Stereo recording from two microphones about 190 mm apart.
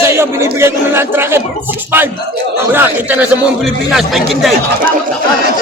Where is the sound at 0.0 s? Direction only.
15° right (ahead or behind).